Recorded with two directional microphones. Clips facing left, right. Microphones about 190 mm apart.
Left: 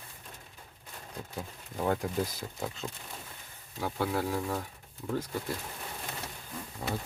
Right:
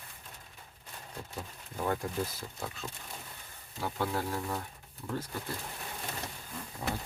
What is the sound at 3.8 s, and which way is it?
Speech, 10° left (ahead or behind).